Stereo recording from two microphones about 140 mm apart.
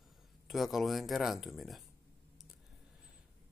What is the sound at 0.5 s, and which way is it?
Speech, centre (ahead or behind).